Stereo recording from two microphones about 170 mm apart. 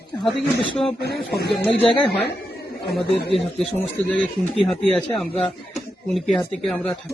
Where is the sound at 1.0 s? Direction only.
70° left (ahead or behind).